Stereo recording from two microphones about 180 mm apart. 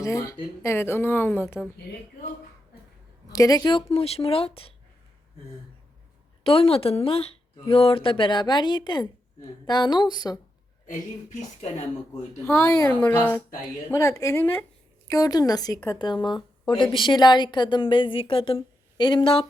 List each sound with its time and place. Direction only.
0.0 s a woman's voice: 15° left (ahead or behind)
3.3 s speech: 20° left (ahead or behind)
6.4 s a woman's voice: 30° left (ahead or behind)
10.8 s speech: 40° left (ahead or behind)
12.5 s a woman's voice: 15° left (ahead or behind)